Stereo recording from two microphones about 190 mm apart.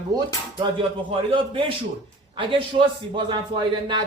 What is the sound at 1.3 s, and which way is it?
Speech, 25° right (ahead or behind).